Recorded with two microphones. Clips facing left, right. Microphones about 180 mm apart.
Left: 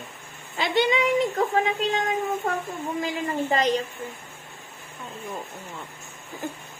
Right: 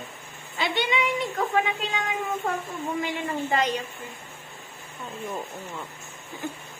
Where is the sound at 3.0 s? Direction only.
35° left (ahead or behind).